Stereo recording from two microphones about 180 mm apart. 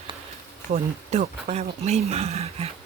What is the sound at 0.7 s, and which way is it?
Speech, 40° right (ahead or behind).